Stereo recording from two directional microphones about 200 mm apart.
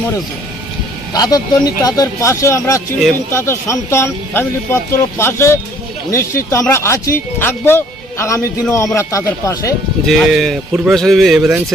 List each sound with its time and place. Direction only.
1.1 s speech: 20° left (ahead or behind)
9.0 s speech: 15° left (ahead or behind)
10.1 s a man's voice: centre (ahead or behind)